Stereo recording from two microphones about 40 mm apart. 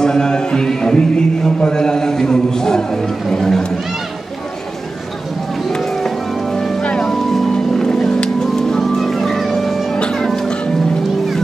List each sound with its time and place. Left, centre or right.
0.0 s music: centre
5.8 s music: centre
6.8 s music: left
7.1 s music: centre
9.9 s music: centre